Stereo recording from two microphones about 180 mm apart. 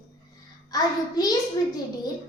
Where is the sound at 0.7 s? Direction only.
20° left (ahead or behind).